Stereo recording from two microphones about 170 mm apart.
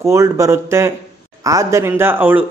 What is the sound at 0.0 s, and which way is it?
Speech, 15° right (ahead or behind).